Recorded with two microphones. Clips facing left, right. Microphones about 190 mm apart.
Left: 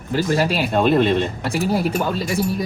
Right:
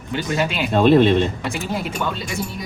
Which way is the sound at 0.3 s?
35° left (ahead or behind).